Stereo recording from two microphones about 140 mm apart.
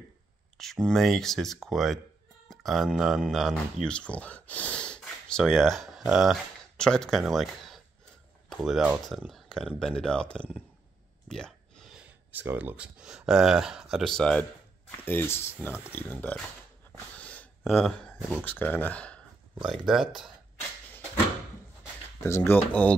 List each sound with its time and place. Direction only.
0.6 s speech: 5° left (ahead or behind)
11.2 s a sound: 5° left (ahead or behind)
11.9 s speech: 10° right (ahead or behind)
14.9 s speech: 15° left (ahead or behind)
17.2 s a sound: 10° left (ahead or behind)
17.6 s speech: centre (ahead or behind)
19.6 s speech: centre (ahead or behind)
22.2 s speech: 15° left (ahead or behind)